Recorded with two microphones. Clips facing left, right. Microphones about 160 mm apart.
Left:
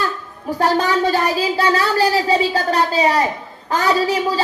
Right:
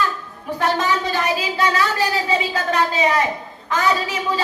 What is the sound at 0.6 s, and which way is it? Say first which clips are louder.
A woman's voice: left 4 dB; 35° left (ahead or behind).